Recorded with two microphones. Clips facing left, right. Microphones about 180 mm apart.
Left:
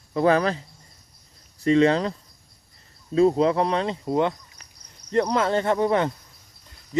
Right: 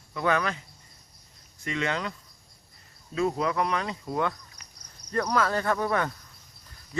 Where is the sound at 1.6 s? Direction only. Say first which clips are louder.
Left 12 dB; 35° left (ahead or behind).